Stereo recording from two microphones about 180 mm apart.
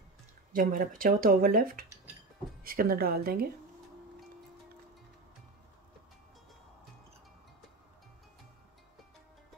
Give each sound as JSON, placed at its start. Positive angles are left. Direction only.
{"t": 0.5, "sound": "a woman's voice", "side_deg": -50}